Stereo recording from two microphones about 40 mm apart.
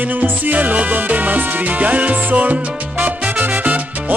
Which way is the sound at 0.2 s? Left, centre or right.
Right.